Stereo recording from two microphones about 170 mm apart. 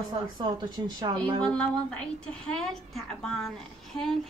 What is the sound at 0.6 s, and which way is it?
Speech, 25° right (ahead or behind).